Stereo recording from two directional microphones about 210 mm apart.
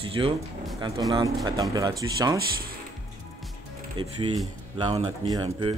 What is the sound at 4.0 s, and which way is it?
Speech, 25° right (ahead or behind).